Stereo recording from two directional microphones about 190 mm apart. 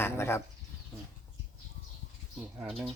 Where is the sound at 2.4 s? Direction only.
5° right (ahead or behind).